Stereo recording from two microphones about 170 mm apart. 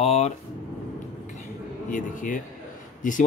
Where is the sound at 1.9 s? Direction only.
50° left (ahead or behind).